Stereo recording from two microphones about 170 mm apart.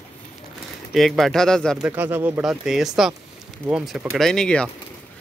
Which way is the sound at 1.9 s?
10° right (ahead or behind).